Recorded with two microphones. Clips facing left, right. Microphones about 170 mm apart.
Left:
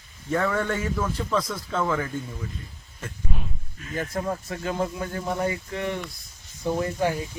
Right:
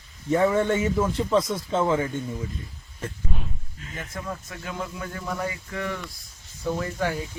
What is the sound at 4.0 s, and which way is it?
Speech, 40° left (ahead or behind).